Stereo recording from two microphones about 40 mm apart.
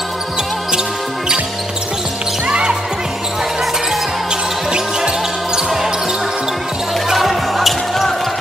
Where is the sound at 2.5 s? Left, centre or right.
Right.